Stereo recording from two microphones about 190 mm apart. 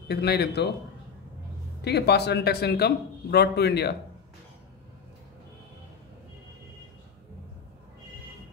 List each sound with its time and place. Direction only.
0.1 s a man's voice: 60° left (ahead or behind)
1.8 s a man's voice: 60° left (ahead or behind)